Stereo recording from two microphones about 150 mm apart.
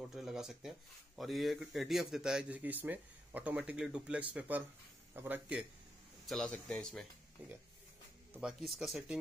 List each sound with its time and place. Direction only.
0.1 s speech: 5° right (ahead or behind)
6.2 s speech: 5° left (ahead or behind)
7.4 s speech: 10° right (ahead or behind)